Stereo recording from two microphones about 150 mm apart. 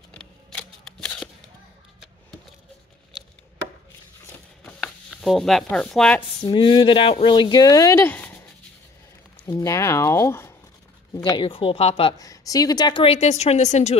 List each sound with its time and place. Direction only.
0.1 s camera: 5° left (ahead or behind)
0.8 s shuffling cards: 5° left (ahead or behind)
4.6 s chopping: 5° left (ahead or behind)
6.4 s speech: 30° left (ahead or behind); by 8.3 s 15° left (ahead or behind)
9.5 s speech: 20° left (ahead or behind)
11.4 s a woman's voice: 35° left (ahead or behind)
12.2 s a woman's voice: 25° left (ahead or behind); by 13.9 s 50° left (ahead or behind)